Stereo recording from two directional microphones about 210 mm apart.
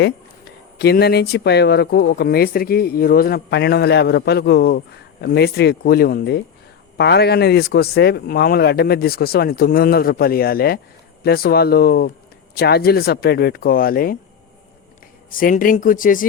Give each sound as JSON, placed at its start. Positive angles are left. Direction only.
{"t": 0.8, "sound": "speech", "side_deg": 50}
{"t": 15.3, "sound": "speech", "side_deg": 40}